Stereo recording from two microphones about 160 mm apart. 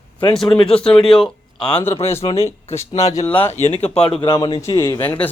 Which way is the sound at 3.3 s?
10° left (ahead or behind).